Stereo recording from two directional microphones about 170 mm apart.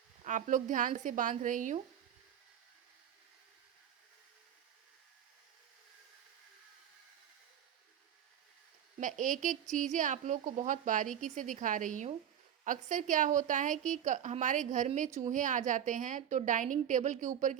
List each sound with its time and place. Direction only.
0.3 s speech: 45° right (ahead or behind)
9.0 s speech: 50° right (ahead or behind)